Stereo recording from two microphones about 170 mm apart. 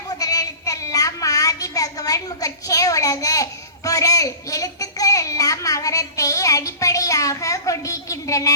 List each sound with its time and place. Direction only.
0.1 s child singing: 20° left (ahead or behind)